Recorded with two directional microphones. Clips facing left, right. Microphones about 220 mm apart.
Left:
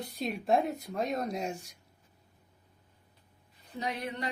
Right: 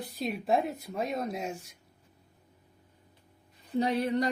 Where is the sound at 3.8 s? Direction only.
35° right (ahead or behind).